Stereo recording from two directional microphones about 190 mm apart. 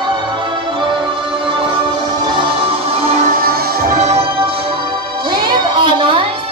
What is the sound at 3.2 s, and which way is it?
Music, 50° right (ahead or behind).